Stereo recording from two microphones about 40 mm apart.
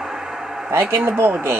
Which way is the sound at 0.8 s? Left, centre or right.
Right.